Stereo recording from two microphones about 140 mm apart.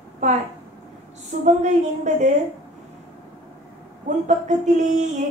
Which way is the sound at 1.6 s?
55° right (ahead or behind).